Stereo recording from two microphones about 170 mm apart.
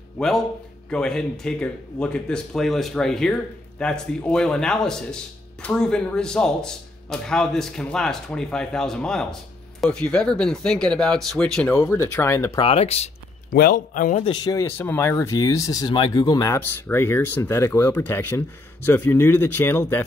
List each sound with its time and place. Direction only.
0.8 s speech: 5° left (ahead or behind)
12.5 s speech: 35° left (ahead or behind)
13.5 s a man's voice: 60° left (ahead or behind)
14.2 s speech: 25° left (ahead or behind)